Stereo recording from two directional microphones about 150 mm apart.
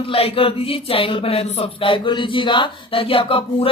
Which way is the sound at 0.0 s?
40° left (ahead or behind).